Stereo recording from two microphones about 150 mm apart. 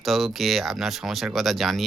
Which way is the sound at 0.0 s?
Centre (ahead or behind).